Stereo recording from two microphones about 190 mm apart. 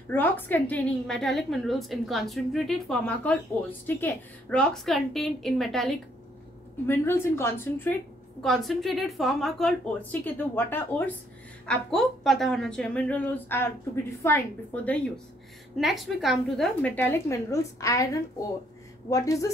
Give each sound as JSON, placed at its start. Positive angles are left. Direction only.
{"t": 0.1, "sound": "a woman's voice", "side_deg": 10}
{"t": 6.9, "sound": "a woman's voice", "side_deg": 10}
{"t": 8.4, "sound": "a woman's voice", "side_deg": 0}
{"t": 15.8, "sound": "a woman's voice", "side_deg": 0}